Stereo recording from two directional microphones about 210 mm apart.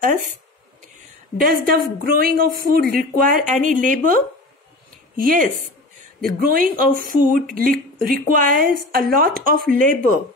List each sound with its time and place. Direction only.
1.4 s speech: 45° right (ahead or behind)
5.1 s speech: 40° right (ahead or behind)